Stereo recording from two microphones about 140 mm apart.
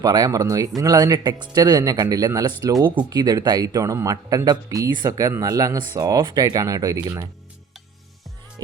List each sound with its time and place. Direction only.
0.0 s speech: 30° right (ahead or behind)